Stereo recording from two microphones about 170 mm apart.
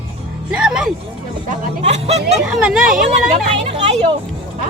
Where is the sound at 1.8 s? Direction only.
40° right (ahead or behind).